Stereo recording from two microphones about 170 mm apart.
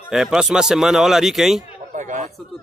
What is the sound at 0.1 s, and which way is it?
Speech, 5° right (ahead or behind).